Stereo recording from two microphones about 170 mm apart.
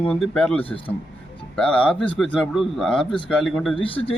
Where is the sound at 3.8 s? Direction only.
30° left (ahead or behind).